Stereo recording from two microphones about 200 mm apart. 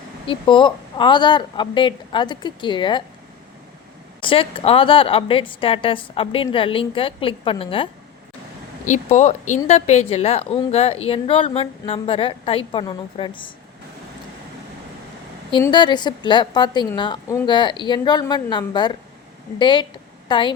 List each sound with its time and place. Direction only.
0.3 s a woman's voice: 25° left (ahead or behind)
4.2 s a woman's voice: 25° left (ahead or behind)
8.8 s a woman's voice: 40° left (ahead or behind)
15.6 s a woman's voice: 25° left (ahead or behind)